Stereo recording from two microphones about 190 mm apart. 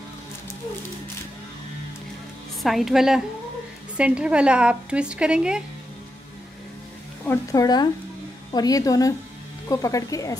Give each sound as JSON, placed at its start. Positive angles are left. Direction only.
{"t": 2.6, "sound": "a woman's voice", "side_deg": 0}
{"t": 7.2, "sound": "speech", "side_deg": 20}